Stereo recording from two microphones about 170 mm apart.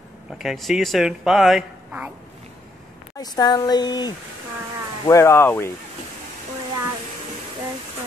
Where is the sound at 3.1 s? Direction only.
25° left (ahead or behind).